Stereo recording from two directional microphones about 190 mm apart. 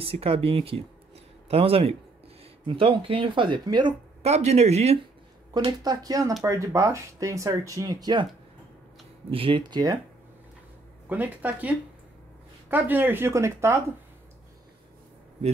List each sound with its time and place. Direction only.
0.0 s speech: 30° right (ahead or behind)
5.5 s speech: 20° right (ahead or behind)
9.3 s speech: 25° right (ahead or behind)
11.1 s speech: 10° right (ahead or behind)